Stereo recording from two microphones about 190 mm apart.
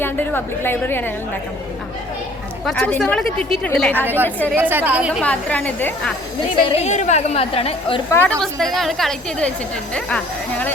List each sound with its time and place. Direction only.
0.0 s a woman's voice: 10° left (ahead or behind)
2.6 s a woman's voice: 5° left (ahead or behind)
4.0 s a woman's voice: 10° right (ahead or behind)
5.2 s a woman's voice: 5° left (ahead or behind)
6.7 s a woman's voice: 35° left (ahead or behind)
8.1 s a woman's voice: 10° left (ahead or behind)